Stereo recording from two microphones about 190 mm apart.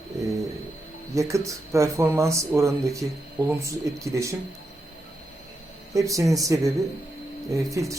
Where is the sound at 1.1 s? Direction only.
15° right (ahead or behind).